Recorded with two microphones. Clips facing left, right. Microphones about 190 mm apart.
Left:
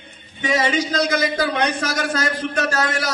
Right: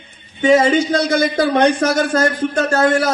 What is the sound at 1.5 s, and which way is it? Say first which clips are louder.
Speech: right 8 dB; 50° right (ahead or behind).